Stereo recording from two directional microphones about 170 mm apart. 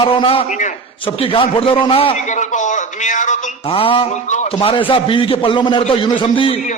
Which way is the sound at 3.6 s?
30° left (ahead or behind).